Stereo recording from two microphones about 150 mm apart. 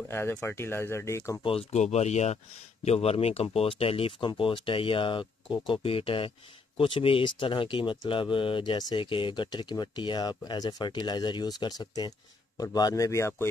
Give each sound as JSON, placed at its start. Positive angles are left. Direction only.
{"t": 0.1, "sound": "speech", "side_deg": 15}
{"t": 1.4, "sound": "a man's voice", "side_deg": 40}